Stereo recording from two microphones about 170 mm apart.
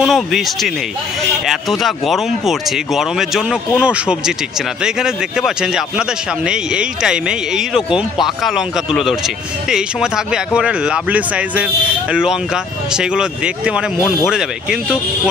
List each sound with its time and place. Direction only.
0.0 s speech: centre (ahead or behind)